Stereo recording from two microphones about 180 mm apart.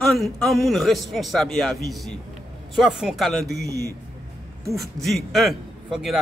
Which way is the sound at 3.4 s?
65° right (ahead or behind).